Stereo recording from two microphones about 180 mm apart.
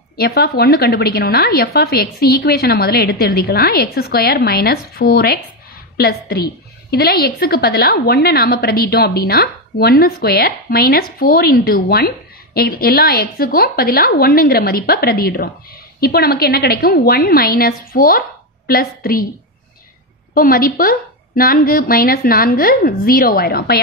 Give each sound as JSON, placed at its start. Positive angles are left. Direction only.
{"t": 0.2, "sound": "a woman's voice", "side_deg": 60}
{"t": 20.3, "sound": "a woman's voice", "side_deg": 55}